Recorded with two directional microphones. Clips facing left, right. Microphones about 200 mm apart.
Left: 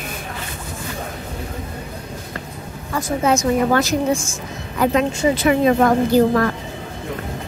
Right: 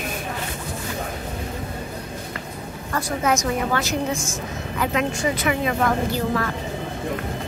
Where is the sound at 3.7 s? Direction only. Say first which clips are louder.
Left 6 dB; 40° left (ahead or behind).